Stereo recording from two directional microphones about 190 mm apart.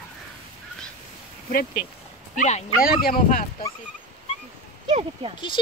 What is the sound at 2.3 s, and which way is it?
Speech, 40° left (ahead or behind).